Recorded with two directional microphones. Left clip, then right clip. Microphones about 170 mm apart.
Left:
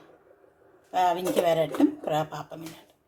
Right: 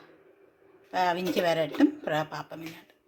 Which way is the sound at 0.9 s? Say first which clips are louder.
Left 3 dB; 15° right (ahead or behind).